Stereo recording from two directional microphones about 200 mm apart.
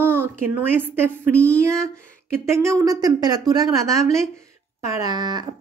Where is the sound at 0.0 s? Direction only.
10° right (ahead or behind).